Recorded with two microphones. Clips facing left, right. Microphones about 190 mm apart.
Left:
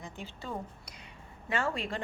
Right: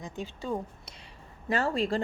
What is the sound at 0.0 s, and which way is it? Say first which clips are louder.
Speech: right 6 dB; 15° right (ahead or behind).